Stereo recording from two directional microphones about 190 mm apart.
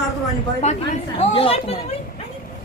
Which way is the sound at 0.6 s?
35° left (ahead or behind).